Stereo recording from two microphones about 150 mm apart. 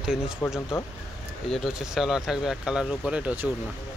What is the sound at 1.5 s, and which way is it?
Speech, centre (ahead or behind).